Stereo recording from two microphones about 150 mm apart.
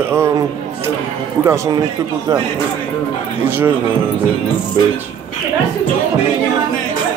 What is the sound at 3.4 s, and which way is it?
Speech, 15° right (ahead or behind).